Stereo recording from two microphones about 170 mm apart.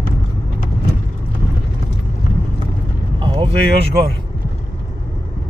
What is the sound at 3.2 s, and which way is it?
Vehicle, 30° right (ahead or behind).